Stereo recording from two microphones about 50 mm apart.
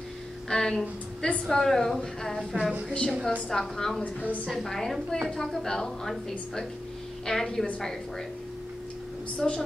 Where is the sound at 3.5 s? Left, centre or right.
Centre.